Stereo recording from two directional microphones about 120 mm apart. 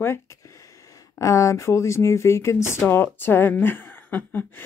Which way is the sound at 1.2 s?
25° left (ahead or behind).